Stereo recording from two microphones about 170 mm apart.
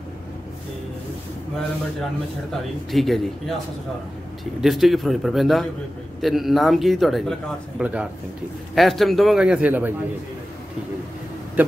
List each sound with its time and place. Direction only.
2.5 s a man's voice: centre (ahead or behind)
4.6 s a man's voice: centre (ahead or behind)